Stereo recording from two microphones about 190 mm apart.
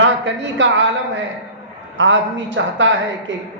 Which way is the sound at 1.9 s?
75° right (ahead or behind).